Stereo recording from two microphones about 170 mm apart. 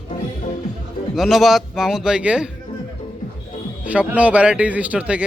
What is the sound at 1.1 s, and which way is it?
A man's voice, centre (ahead or behind).